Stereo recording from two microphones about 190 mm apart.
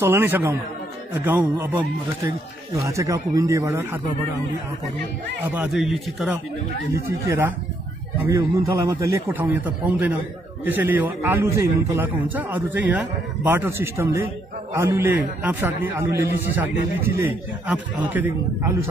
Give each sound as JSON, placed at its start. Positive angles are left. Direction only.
{"t": 0.0, "sound": "a man's voice", "side_deg": -10}
{"t": 5.5, "sound": "speech", "side_deg": -5}
{"t": 6.9, "sound": "a man's voice", "side_deg": -15}